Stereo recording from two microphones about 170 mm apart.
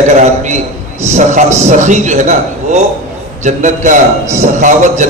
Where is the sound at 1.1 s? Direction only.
40° right (ahead or behind).